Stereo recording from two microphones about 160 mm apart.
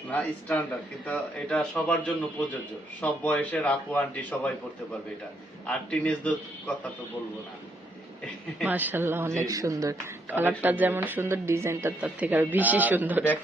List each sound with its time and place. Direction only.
0.1 s speech: 10° left (ahead or behind)
5.6 s speech: 10° left (ahead or behind)
8.6 s speech: 10° right (ahead or behind)